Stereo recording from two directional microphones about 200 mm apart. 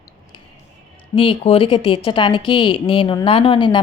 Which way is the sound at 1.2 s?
30° left (ahead or behind).